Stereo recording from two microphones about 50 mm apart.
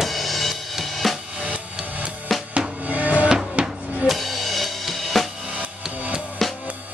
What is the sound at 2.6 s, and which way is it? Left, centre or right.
Music, right.